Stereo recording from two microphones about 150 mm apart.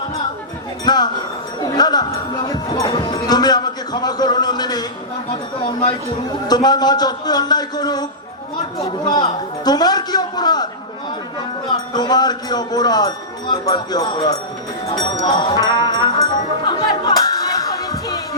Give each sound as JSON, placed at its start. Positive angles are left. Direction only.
{"t": 0.9, "sound": "a sound", "side_deg": 25}
{"t": 1.6, "sound": "music", "side_deg": 25}
{"t": 6.5, "sound": "speech", "side_deg": 25}
{"t": 11.9, "sound": "speech", "side_deg": 25}
{"t": 16.6, "sound": "music", "side_deg": 30}